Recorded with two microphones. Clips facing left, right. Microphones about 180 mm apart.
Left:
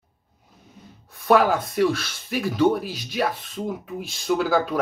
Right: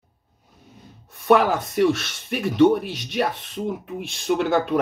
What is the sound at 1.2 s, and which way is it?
Speech, centre (ahead or behind).